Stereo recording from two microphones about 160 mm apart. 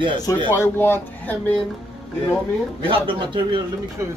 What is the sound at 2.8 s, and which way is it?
Speech, 30° right (ahead or behind).